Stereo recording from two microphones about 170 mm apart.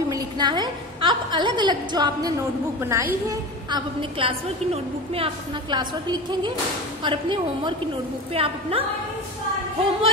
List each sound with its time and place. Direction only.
0.1 s a woman's voice: 25° right (ahead or behind)
2.8 s a woman's voice: 15° right (ahead or behind)
3.7 s a woman's voice: 30° right (ahead or behind)